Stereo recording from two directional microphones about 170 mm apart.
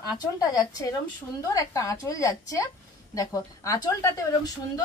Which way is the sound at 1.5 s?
20° left (ahead or behind).